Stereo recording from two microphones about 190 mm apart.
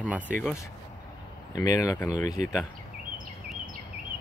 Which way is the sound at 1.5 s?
20° left (ahead or behind).